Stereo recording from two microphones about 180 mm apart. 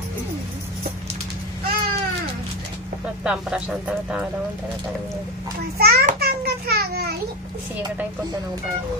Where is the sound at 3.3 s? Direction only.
5° right (ahead or behind).